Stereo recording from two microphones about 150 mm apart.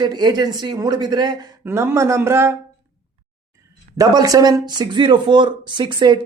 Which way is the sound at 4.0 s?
25° right (ahead or behind).